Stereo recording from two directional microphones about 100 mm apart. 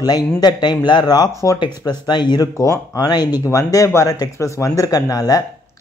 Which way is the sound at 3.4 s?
30° left (ahead or behind).